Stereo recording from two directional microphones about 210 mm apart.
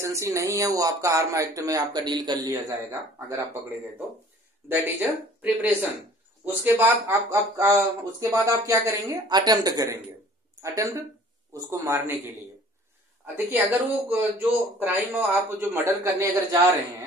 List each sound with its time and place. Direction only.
0.0 s speech: 15° right (ahead or behind)
4.6 s speech: 10° right (ahead or behind)
13.5 s speech: 5° right (ahead or behind)